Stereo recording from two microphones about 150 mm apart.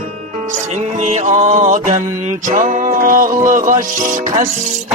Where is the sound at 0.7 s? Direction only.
50° right (ahead or behind).